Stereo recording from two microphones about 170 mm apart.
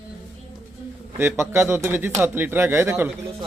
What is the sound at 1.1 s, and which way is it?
A man's voice, 15° right (ahead or behind).